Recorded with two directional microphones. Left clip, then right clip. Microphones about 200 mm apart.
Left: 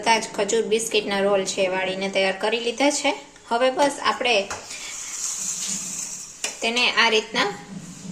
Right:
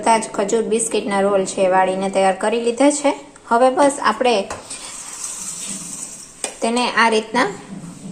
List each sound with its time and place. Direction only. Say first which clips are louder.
0.0 s a woman's voice: right 4 dB; 10° right (ahead or behind)
6.6 s a woman's voice: right 3 dB; 15° right (ahead or behind)